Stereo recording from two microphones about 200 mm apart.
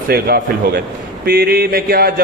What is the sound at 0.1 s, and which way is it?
A man's voice, 50° right (ahead or behind).